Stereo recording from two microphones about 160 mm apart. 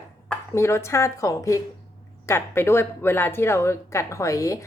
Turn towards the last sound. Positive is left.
turn(degrees=20)  # may be behind; listen again after turning